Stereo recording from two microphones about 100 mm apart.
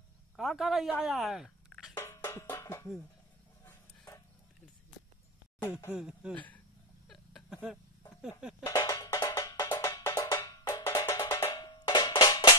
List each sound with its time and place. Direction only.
0.4 s a man's voice: centre (ahead or behind)
1.0 s a sound: centre (ahead or behind)
2.0 s music: 30° left (ahead or behind)
2.4 s a sound: 25° left (ahead or behind)
5.7 s speech: 25° left (ahead or behind)
5.9 s speech: 10° right (ahead or behind)
6.3 s speech: 15° left (ahead or behind)
7.1 s a sound: centre (ahead or behind)
8.2 s a man's voice: 5° right (ahead or behind)
8.8 s music: 35° left (ahead or behind)
9.3 s percussion: 40° left (ahead or behind)
9.7 s percussion: 25° left (ahead or behind)
11.7 s music: 45° left (ahead or behind)